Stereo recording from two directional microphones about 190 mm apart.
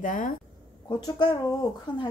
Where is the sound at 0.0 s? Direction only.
45° left (ahead or behind).